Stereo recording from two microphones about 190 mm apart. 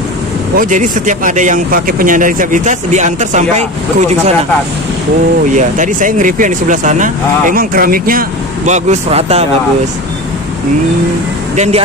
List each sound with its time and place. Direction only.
0.6 s speech: 40° right (ahead or behind)
5.5 s speech: 40° right (ahead or behind)
11.5 s speech: 35° right (ahead or behind)